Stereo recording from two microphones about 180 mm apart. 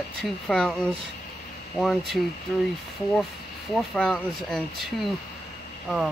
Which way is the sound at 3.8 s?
5° left (ahead or behind).